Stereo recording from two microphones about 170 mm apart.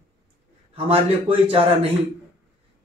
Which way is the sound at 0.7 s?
35° right (ahead or behind).